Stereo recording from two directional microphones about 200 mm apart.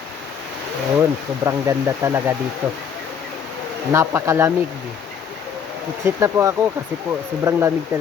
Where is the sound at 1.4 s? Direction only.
15° right (ahead or behind).